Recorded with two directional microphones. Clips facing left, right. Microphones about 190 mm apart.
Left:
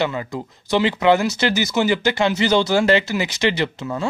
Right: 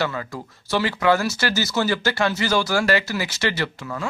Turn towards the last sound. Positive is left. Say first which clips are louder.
# left 4 dB
turn(degrees=20)  # may be behind; listen again after turning